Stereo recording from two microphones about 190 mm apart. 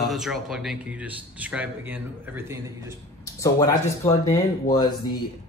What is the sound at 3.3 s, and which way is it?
Speech, 15° left (ahead or behind).